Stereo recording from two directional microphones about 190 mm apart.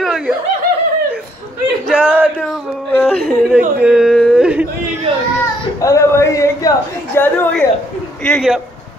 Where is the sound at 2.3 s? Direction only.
5° left (ahead or behind).